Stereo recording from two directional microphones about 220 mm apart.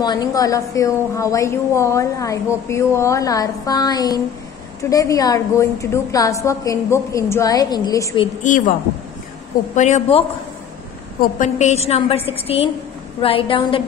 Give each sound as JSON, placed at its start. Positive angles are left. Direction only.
{"t": 0.0, "sound": "a woman's voice", "side_deg": 20}
{"t": 8.5, "sound": "a woman's voice", "side_deg": 35}
{"t": 9.8, "sound": "a woman's voice", "side_deg": 30}